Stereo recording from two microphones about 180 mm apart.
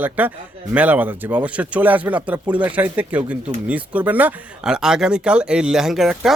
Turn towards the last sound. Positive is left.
turn(degrees=0)  # may be behind; listen again after turning